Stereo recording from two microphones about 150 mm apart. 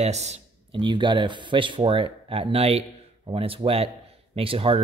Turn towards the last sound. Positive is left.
turn(degrees=-40)  # may be behind; listen again after turning